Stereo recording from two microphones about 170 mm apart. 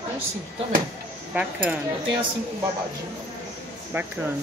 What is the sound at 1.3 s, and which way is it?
Speech, 10° right (ahead or behind).